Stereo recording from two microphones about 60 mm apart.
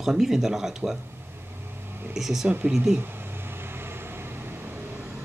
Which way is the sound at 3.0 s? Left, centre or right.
Right.